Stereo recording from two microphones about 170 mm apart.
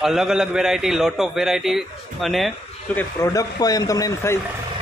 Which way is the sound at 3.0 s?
15° left (ahead or behind).